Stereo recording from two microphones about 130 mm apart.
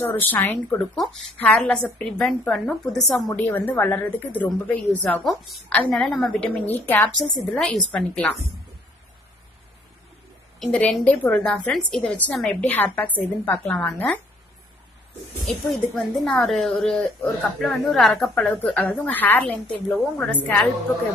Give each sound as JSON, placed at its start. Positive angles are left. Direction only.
{"t": 0.0, "sound": "a woman's voice", "side_deg": 15}
{"t": 0.9, "sound": "a woman's voice", "side_deg": 0}
{"t": 3.4, "sound": "a woman's voice", "side_deg": 15}
{"t": 5.2, "sound": "a woman's voice", "side_deg": 0}
{"t": 10.6, "sound": "a woman's voice", "side_deg": 5}
{"t": 13.7, "sound": "a woman's voice", "side_deg": 5}
{"t": 15.4, "sound": "a woman's voice", "side_deg": 0}